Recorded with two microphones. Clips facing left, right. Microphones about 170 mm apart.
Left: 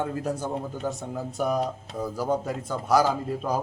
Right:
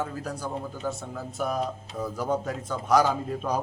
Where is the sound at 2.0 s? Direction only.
10° left (ahead or behind).